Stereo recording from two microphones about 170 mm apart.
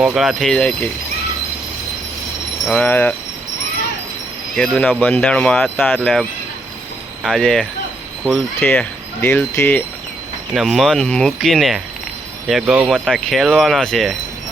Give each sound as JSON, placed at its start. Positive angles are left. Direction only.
{"t": 0.0, "sound": "speech", "side_deg": -5}
{"t": 2.6, "sound": "speech", "side_deg": 5}
{"t": 4.5, "sound": "speech", "side_deg": 0}
{"t": 10.5, "sound": "speech", "side_deg": 0}